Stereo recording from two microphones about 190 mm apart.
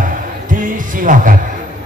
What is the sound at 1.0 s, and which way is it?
Speech, 45° right (ahead or behind).